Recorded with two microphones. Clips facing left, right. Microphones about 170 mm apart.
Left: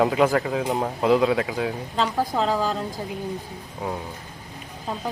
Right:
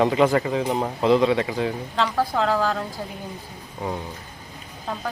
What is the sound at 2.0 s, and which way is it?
Speech, 15° left (ahead or behind).